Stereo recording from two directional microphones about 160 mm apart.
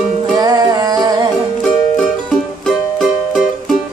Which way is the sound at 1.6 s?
5° left (ahead or behind).